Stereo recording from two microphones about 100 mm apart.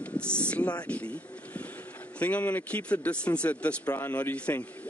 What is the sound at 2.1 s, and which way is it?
Speech, 15° left (ahead or behind).